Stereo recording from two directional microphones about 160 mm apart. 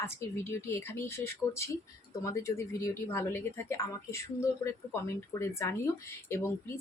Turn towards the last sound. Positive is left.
turn(degrees=15)  # may be behind; listen again after turning